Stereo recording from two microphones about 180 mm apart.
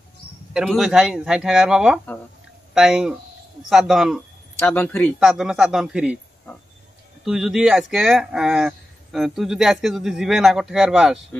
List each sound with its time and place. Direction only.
0.5 s speech: centre (ahead or behind)
5.2 s speech: 5° right (ahead or behind)
7.2 s speech: centre (ahead or behind)